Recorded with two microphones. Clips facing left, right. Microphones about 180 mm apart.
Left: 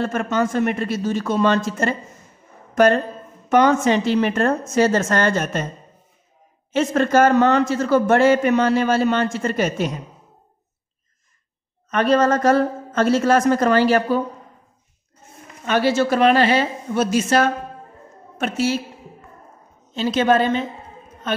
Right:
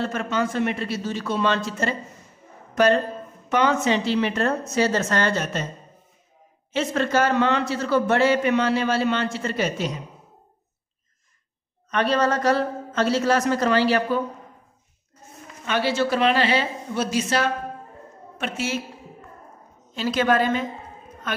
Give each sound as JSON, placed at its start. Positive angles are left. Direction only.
{"t": 0.0, "sound": "a man's voice", "side_deg": 50}
{"t": 6.7, "sound": "a man's voice", "side_deg": 50}
{"t": 11.9, "sound": "a man's voice", "side_deg": 45}
{"t": 15.6, "sound": "a man's voice", "side_deg": 45}
{"t": 19.9, "sound": "a woman's voice", "side_deg": 25}